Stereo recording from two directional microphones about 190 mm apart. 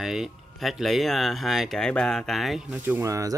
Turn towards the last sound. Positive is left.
turn(degrees=-15)  # may be behind; listen again after turning